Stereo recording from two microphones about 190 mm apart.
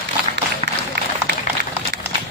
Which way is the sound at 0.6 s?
35° right (ahead or behind).